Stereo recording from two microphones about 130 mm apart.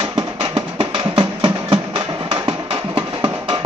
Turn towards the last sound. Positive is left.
turn(degrees=-40)  # may be behind; listen again after turning